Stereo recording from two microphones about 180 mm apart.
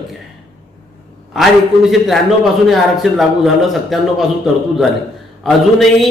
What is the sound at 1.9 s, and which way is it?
A man's voice, centre (ahead or behind).